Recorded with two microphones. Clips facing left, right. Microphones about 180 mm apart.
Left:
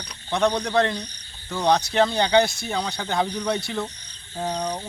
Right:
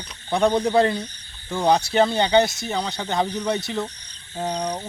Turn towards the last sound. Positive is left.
turn(degrees=-10)  # may be behind; listen again after turning